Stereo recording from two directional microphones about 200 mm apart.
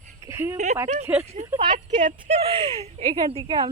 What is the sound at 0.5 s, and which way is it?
Speech, 35° right (ahead or behind).